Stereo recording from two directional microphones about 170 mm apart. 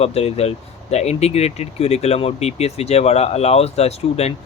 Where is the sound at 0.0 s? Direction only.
35° left (ahead or behind).